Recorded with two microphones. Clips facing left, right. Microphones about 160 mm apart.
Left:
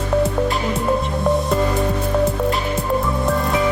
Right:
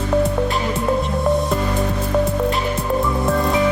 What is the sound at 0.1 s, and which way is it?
Music, centre (ahead or behind).